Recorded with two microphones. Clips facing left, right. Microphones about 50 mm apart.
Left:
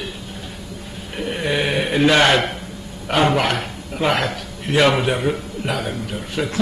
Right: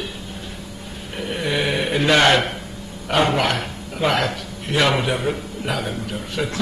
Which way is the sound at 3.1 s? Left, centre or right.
Centre.